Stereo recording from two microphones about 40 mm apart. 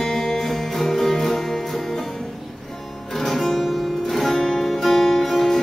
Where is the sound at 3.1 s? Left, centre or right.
Centre.